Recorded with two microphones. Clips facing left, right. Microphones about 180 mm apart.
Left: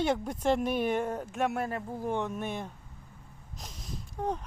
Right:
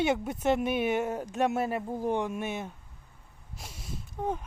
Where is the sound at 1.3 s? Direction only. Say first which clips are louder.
Right 4 dB; 20° right (ahead or behind); by 2.7 s 5° right (ahead or behind).